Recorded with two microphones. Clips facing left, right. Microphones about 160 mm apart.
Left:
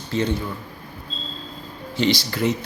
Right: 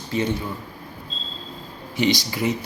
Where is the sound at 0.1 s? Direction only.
15° right (ahead or behind).